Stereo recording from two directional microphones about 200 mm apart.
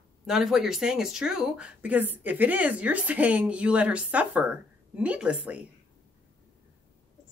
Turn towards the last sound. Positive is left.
turn(degrees=-5)  # may be behind; listen again after turning